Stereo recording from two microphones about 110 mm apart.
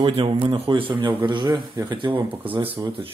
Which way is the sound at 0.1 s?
60° right (ahead or behind).